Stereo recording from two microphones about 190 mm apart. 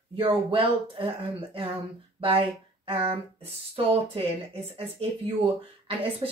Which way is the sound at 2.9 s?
30° right (ahead or behind).